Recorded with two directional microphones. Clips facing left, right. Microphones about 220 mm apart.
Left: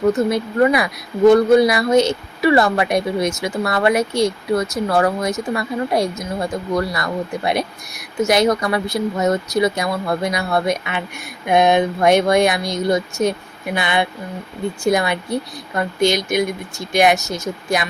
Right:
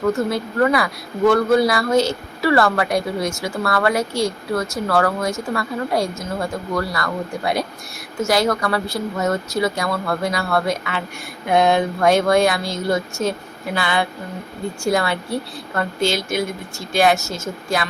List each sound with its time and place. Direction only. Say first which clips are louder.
0.1 s a woman's voice: left 3 dB; 20° left (ahead or behind)